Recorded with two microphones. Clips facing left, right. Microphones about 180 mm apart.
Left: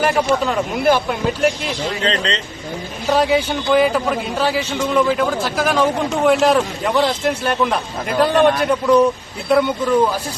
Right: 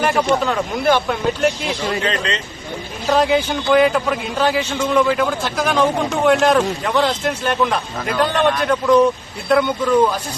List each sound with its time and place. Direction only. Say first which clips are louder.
0.0 s a man's voice: even; centre (ahead or behind)
2.0 s speech: left 1 dB; 30° left (ahead or behind)
3.1 s a man's voice: even; centre (ahead or behind)